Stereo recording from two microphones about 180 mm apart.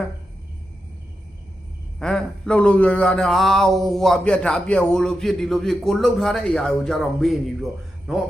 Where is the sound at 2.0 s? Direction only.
5° left (ahead or behind).